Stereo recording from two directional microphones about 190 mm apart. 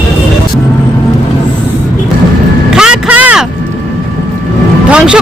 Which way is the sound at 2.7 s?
5° right (ahead or behind).